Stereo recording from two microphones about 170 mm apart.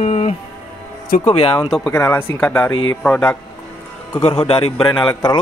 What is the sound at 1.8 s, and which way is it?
Speech, 15° left (ahead or behind).